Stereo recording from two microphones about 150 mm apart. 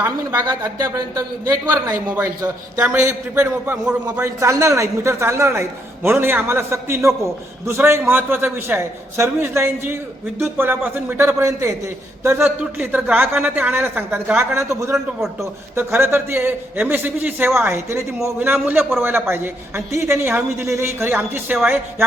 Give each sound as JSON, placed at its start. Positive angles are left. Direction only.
{"t": 0.6, "sound": "a man's voice", "side_deg": -20}
{"t": 14.9, "sound": "a man's voice", "side_deg": -5}
{"t": 15.7, "sound": "a man's voice", "side_deg": -15}